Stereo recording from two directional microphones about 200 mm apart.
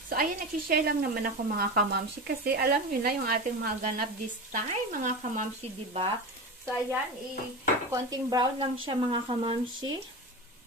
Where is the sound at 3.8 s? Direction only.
45° right (ahead or behind).